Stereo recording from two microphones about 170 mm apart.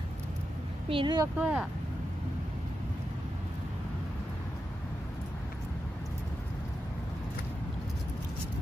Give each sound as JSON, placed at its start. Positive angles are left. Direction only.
{"t": 0.8, "sound": "speech", "side_deg": -30}
{"t": 1.4, "sound": "speech", "side_deg": -5}